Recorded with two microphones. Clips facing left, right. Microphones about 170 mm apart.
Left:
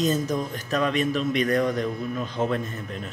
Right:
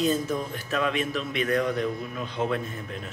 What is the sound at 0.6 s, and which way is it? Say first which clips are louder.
A man's voice: left 4 dB; centre (ahead or behind).